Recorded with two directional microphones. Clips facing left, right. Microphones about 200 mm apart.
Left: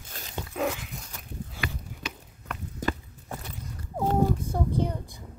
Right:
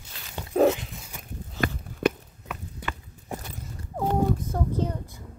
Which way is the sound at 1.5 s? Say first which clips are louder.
Right 11 dB; 50° right (ahead or behind).